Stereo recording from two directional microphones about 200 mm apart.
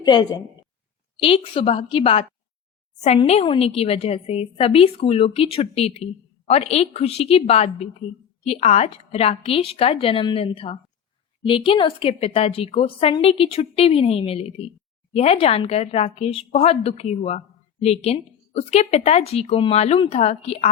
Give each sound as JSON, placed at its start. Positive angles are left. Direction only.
{"t": 0.0, "sound": "a woman's voice", "side_deg": 20}